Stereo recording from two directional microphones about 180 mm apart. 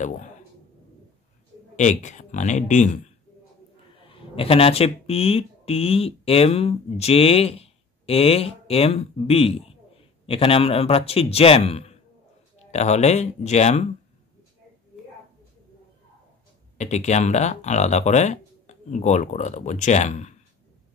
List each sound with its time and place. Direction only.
1.8 s speech: 40° left (ahead or behind)
3.9 s speech: 30° left (ahead or behind)
16.7 s speech: 40° left (ahead or behind)